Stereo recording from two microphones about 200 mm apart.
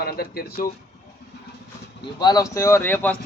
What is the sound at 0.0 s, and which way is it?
Speech, 50° left (ahead or behind).